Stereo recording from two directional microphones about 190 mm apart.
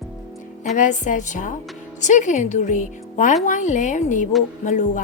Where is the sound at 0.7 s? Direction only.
40° left (ahead or behind).